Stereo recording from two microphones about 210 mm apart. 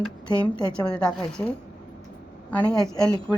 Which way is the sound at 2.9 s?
15° left (ahead or behind).